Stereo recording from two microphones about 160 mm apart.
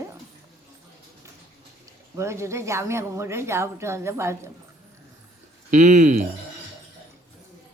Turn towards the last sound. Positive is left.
turn(degrees=-50)  # may be behind; listen again after turning